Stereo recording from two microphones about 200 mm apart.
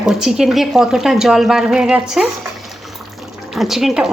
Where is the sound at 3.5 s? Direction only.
Centre (ahead or behind).